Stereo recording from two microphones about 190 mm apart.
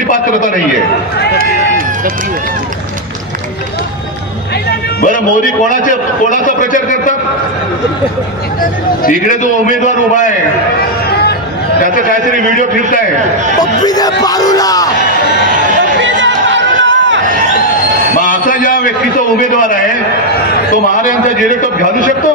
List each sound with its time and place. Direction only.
4.6 s music: 45° left (ahead or behind)
5.7 s a man's voice: 45° left (ahead or behind)
9.0 s a man's voice: 40° left (ahead or behind)
12.3 s a man's voice: 40° right (ahead or behind)
13.6 s crowd: 20° left (ahead or behind)
16.0 s chatter: 75° right (ahead or behind)
18.2 s a sound: 45° left (ahead or behind)